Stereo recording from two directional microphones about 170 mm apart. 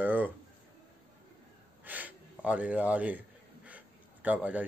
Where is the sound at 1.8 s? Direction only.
10° right (ahead or behind).